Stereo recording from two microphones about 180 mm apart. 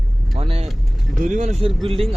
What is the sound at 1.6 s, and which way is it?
Speech, 30° right (ahead or behind).